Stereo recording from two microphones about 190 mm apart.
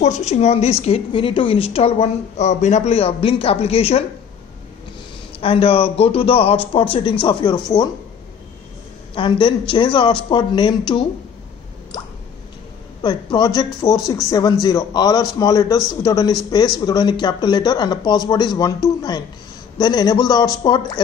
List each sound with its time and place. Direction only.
0.0 s a woman's voice: 35° left (ahead or behind)
5.4 s speech: 30° left (ahead or behind)
9.1 s speech: 25° left (ahead or behind)
13.0 s speech: 20° left (ahead or behind)
19.8 s speech: 20° left (ahead or behind)